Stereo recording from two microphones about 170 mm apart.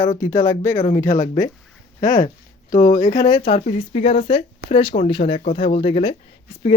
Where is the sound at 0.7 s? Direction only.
40° left (ahead or behind).